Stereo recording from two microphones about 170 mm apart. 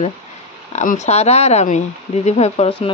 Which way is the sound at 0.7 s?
45° left (ahead or behind).